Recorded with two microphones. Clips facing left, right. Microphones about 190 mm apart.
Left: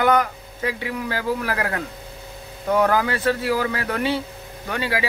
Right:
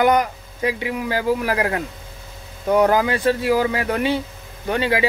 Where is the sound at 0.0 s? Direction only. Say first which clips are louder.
Right 2 dB; 15° right (ahead or behind).